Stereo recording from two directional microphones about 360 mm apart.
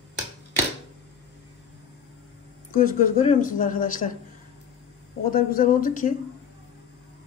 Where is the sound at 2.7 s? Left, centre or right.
Left.